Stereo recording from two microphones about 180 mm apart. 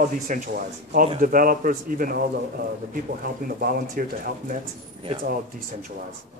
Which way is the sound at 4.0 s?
55° right (ahead or behind).